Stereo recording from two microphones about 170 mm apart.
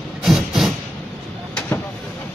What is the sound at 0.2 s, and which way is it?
Vehicle, centre (ahead or behind).